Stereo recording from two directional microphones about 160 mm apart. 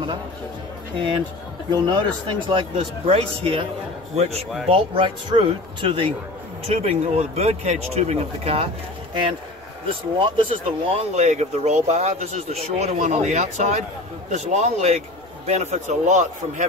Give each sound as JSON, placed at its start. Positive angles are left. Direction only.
{"t": 0.9, "sound": "a man's voice", "side_deg": -30}
{"t": 9.8, "sound": "speech", "side_deg": -30}